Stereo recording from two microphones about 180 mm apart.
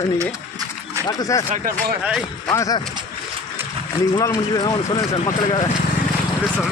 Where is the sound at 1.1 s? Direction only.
20° left (ahead or behind).